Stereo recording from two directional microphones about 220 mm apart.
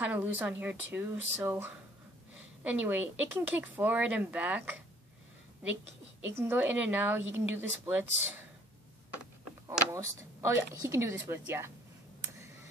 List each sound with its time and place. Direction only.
0.0 s speech: 10° right (ahead or behind)
6.3 s speech: 10° right (ahead or behind)
9.7 s speech: 10° right (ahead or behind)